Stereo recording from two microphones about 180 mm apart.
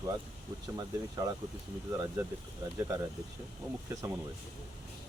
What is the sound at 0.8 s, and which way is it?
Speech, 20° right (ahead or behind).